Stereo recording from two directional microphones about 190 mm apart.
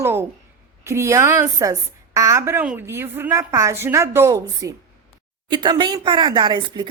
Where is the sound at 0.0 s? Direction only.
10° right (ahead or behind).